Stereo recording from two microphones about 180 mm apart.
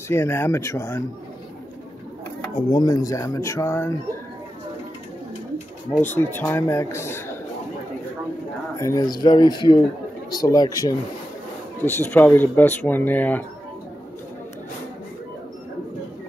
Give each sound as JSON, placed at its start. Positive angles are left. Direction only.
{"t": 0.1, "sound": "speech", "side_deg": 15}
{"t": 2.7, "sound": "speech", "side_deg": 20}
{"t": 5.9, "sound": "speech", "side_deg": 10}
{"t": 8.7, "sound": "speech", "side_deg": 20}